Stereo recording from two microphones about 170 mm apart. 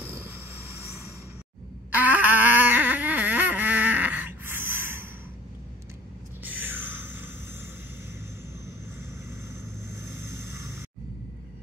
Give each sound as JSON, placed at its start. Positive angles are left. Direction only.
{"t": 0.1, "sound": "vehicle", "side_deg": -15}
{"t": 2.0, "sound": "a sound", "side_deg": -10}
{"t": 6.4, "sound": "music", "side_deg": -10}
{"t": 9.8, "sound": "vehicle", "side_deg": -15}